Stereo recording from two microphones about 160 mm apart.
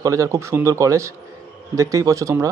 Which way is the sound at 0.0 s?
20° right (ahead or behind).